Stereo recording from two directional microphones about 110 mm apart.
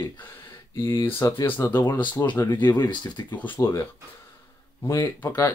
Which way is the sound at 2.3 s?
30° left (ahead or behind).